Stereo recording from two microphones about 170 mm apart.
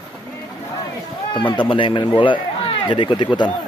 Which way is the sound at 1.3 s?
30° left (ahead or behind).